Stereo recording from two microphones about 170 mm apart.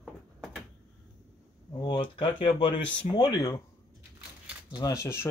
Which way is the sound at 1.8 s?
30° left (ahead or behind).